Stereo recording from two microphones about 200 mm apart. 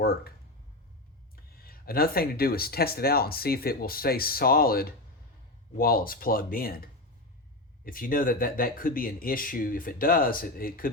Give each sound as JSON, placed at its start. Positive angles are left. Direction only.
{"t": 0.0, "sound": "speech", "side_deg": 50}
{"t": 1.5, "sound": "speech", "side_deg": 45}